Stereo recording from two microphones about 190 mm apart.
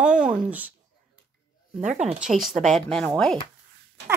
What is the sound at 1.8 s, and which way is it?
Speech, 35° right (ahead or behind).